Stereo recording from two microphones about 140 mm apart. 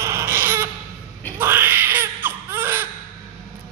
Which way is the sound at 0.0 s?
20° right (ahead or behind).